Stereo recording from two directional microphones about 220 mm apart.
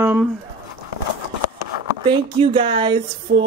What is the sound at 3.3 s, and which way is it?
Music, 50° right (ahead or behind).